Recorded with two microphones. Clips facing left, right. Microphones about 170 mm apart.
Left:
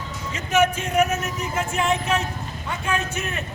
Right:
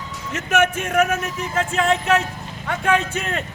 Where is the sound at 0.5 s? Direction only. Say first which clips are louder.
Right 1 dB; 60° right (ahead or behind).